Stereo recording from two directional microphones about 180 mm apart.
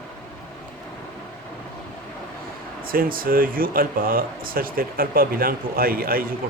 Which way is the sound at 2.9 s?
55° right (ahead or behind).